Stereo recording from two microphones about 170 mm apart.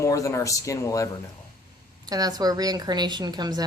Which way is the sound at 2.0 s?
20° right (ahead or behind).